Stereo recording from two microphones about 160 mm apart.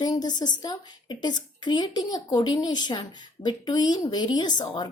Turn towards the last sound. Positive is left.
turn(degrees=25)  # may be behind; listen again after turning